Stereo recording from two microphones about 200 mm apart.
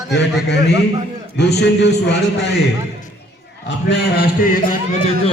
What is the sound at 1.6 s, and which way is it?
Speech, 60° left (ahead or behind).